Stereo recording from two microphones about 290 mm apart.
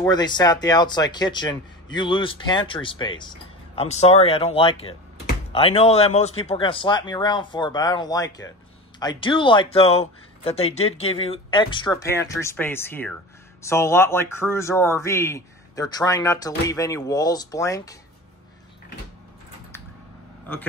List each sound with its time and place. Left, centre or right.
0.0 s speech: centre